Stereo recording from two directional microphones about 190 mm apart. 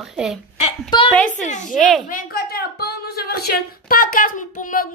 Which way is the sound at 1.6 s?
Centre (ahead or behind).